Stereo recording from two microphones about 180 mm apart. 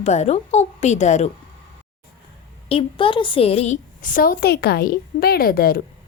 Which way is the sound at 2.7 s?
30° left (ahead or behind).